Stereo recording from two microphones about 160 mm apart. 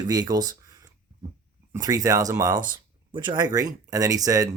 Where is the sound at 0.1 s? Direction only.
25° right (ahead or behind).